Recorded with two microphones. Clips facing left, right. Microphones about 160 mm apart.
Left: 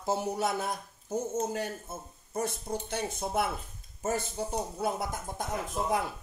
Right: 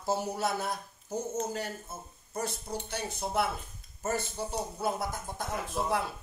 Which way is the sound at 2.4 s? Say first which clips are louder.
Left 1 dB; 55° left (ahead or behind).